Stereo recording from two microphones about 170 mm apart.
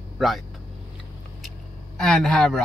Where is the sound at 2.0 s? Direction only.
5° left (ahead or behind).